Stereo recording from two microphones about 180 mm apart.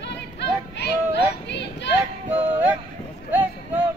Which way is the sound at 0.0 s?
70° left (ahead or behind).